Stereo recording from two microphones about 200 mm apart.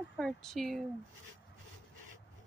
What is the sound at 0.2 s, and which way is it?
Speech, 5° left (ahead or behind).